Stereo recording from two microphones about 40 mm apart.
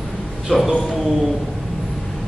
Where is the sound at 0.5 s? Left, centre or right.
Right.